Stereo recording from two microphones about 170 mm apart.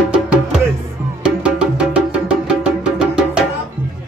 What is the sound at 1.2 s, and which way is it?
Music, 5° right (ahead or behind).